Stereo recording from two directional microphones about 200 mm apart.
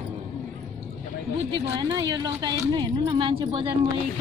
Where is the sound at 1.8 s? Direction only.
20° right (ahead or behind).